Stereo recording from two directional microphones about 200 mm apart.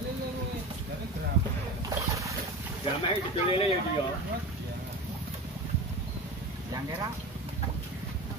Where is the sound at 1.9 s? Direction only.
15° right (ahead or behind).